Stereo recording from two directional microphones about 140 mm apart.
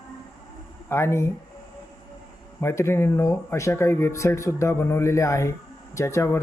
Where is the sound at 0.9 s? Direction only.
20° left (ahead or behind).